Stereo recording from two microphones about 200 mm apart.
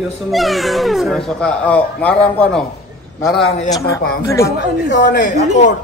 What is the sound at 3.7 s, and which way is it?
Speech, 15° left (ahead or behind).